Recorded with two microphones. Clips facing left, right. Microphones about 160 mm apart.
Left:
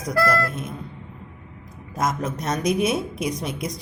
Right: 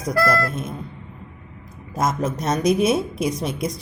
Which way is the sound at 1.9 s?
30° right (ahead or behind).